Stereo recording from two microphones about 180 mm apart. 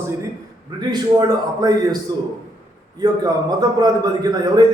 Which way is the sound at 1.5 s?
20° right (ahead or behind).